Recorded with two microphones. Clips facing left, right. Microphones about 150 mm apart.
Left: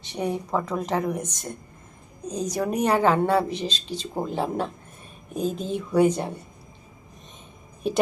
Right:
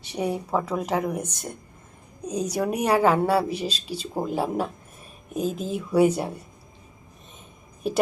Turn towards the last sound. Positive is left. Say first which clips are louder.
# left 1 dB
turn(degrees=-5)  # may be behind; listen again after turning